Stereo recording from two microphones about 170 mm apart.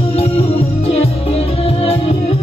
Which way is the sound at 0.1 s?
35° left (ahead or behind).